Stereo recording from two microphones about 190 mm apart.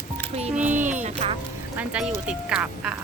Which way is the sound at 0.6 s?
40° right (ahead or behind).